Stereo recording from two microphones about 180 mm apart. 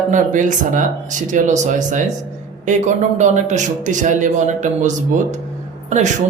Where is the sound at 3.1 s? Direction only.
40° right (ahead or behind).